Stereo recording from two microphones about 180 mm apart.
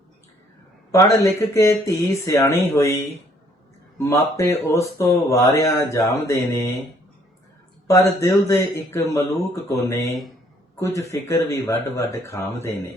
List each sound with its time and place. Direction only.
0.9 s speech: 15° left (ahead or behind)
7.9 s speech: 15° left (ahead or behind)